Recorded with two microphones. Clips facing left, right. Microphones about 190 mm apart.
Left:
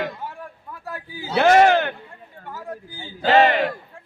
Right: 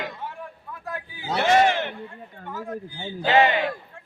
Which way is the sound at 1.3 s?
85° left.